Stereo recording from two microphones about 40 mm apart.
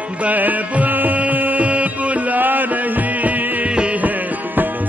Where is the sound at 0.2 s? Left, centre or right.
Right.